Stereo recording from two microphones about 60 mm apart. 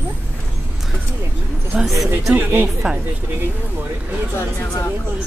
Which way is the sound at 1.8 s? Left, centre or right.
Centre.